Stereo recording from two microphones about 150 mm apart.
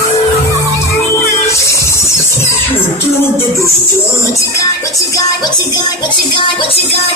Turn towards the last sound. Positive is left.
turn(degrees=35)  # may be behind; listen again after turning